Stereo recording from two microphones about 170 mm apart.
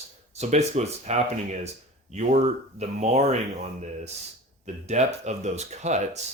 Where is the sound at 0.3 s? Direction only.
40° right (ahead or behind).